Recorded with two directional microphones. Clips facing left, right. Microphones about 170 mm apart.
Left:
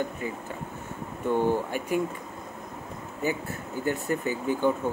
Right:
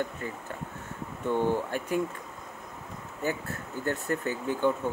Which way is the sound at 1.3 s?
10° left (ahead or behind).